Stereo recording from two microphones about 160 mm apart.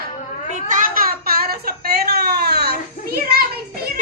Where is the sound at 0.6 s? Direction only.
60° right (ahead or behind); by 2.8 s 80° right.